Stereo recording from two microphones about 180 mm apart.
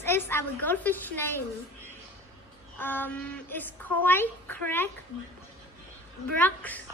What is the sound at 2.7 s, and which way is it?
A woman's voice, 10° left (ahead or behind).